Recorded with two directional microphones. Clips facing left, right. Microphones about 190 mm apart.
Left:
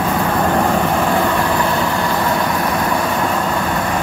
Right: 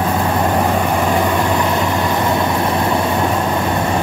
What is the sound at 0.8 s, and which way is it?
Vehicle, 15° right (ahead or behind).